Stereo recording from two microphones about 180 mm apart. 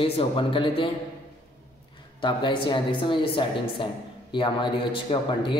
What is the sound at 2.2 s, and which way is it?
Speech, 25° left (ahead or behind).